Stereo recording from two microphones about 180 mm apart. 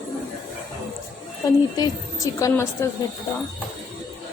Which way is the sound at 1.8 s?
20° left (ahead or behind).